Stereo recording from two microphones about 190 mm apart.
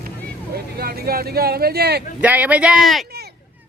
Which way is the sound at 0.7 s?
55° right (ahead or behind).